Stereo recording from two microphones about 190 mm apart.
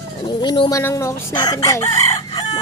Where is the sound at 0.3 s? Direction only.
25° left (ahead or behind).